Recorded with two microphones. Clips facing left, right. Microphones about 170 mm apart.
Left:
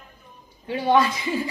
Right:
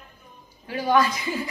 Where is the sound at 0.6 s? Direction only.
25° left (ahead or behind).